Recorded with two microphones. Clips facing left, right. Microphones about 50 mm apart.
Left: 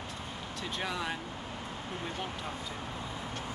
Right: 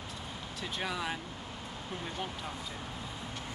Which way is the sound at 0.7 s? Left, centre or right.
Centre.